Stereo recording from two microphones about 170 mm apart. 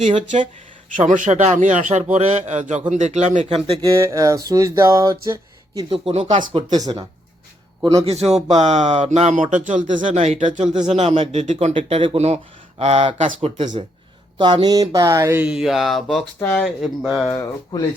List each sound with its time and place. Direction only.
0.9 s speech: 50° right (ahead or behind); by 3.8 s 35° right (ahead or behind)
3.8 s speech: 20° right (ahead or behind)
5.9 s speech: 35° right (ahead or behind)
8.0 s speech: 40° right (ahead or behind)
14.3 s speech: 25° right (ahead or behind); by 16.6 s 10° left (ahead or behind)
16.6 s speech: centre (ahead or behind)
17.2 s speech: 25° left (ahead or behind)